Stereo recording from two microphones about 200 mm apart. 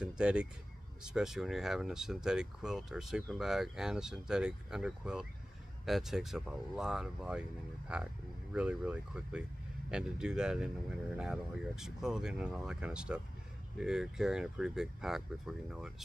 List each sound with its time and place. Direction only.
0.0 s speech: 5° right (ahead or behind)
8.5 s speech: 5° right (ahead or behind)